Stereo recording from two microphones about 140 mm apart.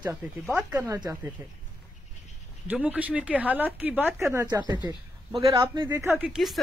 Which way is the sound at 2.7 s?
10° right (ahead or behind).